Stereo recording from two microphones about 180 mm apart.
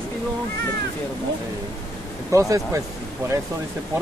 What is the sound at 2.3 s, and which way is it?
Speech, 15° right (ahead or behind).